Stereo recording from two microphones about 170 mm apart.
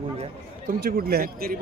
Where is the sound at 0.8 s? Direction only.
60° right (ahead or behind).